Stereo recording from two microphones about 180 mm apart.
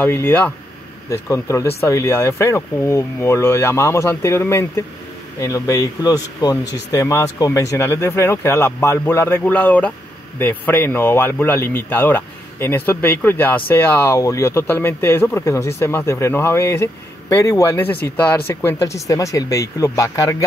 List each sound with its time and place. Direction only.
0.0 s speech: 10° left (ahead or behind)